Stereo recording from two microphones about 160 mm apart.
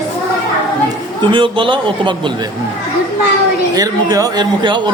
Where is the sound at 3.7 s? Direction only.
20° right (ahead or behind).